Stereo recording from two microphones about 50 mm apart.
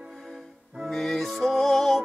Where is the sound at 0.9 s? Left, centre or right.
Centre.